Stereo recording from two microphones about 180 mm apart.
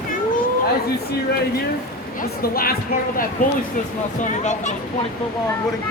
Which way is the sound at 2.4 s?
55° left (ahead or behind).